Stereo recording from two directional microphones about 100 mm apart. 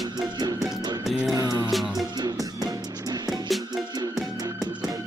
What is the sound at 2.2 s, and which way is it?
Music, 40° right (ahead or behind).